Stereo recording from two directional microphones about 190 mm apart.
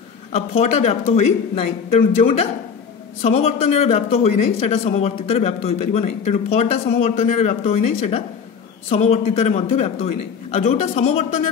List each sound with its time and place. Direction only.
0.3 s a man's voice: 35° left (ahead or behind)